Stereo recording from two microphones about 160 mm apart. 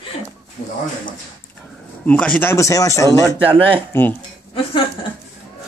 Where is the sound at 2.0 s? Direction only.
10° left (ahead or behind).